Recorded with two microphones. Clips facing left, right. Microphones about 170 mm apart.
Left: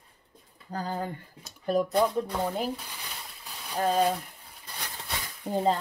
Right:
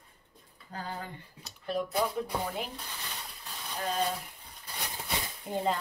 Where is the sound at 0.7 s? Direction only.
40° left (ahead or behind).